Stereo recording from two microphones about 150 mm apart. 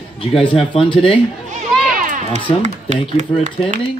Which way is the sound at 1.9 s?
60° right (ahead or behind).